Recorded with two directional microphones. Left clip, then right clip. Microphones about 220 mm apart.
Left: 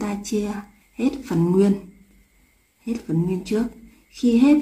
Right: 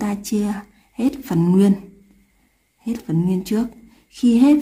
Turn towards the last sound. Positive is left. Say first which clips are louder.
# right 2 dB
turn(degrees=-40)  # may be behind; listen again after turning